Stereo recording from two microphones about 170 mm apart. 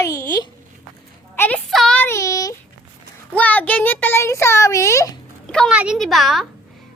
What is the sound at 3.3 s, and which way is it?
A child's voice, 10° left (ahead or behind).